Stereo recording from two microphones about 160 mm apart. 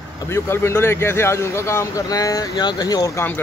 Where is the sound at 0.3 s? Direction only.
15° left (ahead or behind).